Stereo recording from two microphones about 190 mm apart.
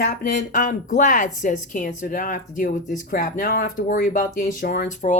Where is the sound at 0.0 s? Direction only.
50° left (ahead or behind).